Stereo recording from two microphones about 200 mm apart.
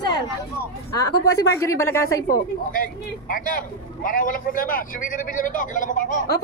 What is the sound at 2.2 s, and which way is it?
Speech, 45° left (ahead or behind).